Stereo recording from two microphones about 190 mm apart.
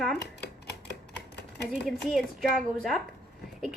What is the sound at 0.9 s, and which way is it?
Typewriter, 60° left (ahead or behind).